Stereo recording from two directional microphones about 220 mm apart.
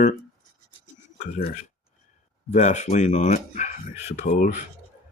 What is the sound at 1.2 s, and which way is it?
Speech, 40° left (ahead or behind).